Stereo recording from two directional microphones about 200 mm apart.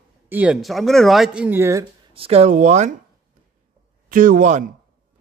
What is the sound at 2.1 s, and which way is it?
Speech, 30° right (ahead or behind).